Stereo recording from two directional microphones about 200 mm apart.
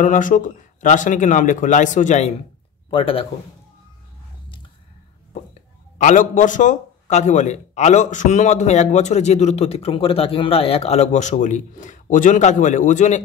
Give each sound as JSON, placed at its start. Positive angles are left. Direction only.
{"t": 0.0, "sound": "a man's voice", "side_deg": 40}
{"t": 2.9, "sound": "a man's voice", "side_deg": 25}
{"t": 5.9, "sound": "a man's voice", "side_deg": 40}